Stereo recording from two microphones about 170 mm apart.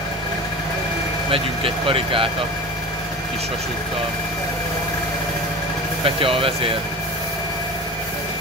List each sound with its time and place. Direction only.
1.3 s speech: 35° right (ahead or behind)
6.0 s speech: 30° right (ahead or behind)